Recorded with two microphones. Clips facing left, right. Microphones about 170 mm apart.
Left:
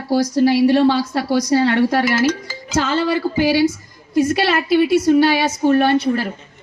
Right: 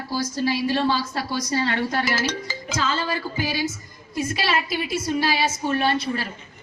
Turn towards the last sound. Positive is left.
turn(degrees=65)  # may be behind; listen again after turning